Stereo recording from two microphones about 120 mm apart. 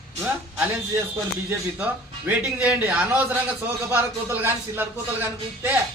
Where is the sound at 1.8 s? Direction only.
15° right (ahead or behind).